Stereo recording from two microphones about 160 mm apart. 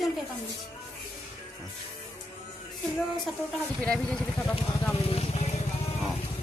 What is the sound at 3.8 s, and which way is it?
Speech, 5° left (ahead or behind).